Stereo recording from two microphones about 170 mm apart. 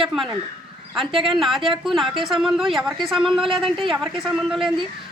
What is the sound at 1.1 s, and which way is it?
Speech, 30° right (ahead or behind).